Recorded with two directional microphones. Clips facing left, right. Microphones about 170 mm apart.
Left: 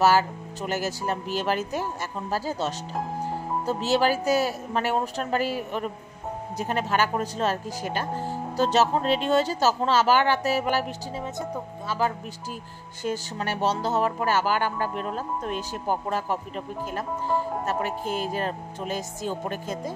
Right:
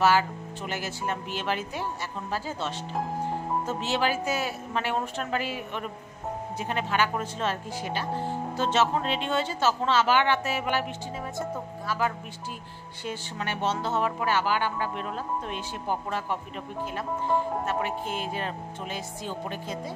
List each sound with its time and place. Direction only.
0.0 s speech: 40° left (ahead or behind)
2.9 s speech: centre (ahead or behind)
3.6 s speech: 40° left (ahead or behind)
8.1 s speech: 10° left (ahead or behind)
8.5 s speech: 40° left (ahead or behind)
11.9 s speech: 25° left (ahead or behind)
13.0 s speech: 40° left (ahead or behind)
17.6 s speech: 40° left (ahead or behind)